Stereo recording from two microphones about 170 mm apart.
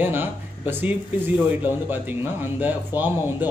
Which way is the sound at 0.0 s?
10° right (ahead or behind).